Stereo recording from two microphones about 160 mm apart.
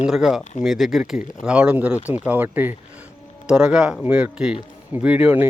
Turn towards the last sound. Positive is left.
turn(degrees=-10)  # may be behind; listen again after turning